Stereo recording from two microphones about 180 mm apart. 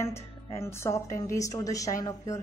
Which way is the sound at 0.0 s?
15° left (ahead or behind).